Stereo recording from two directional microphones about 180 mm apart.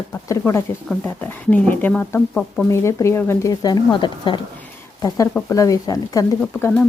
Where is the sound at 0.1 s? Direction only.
15° left (ahead or behind).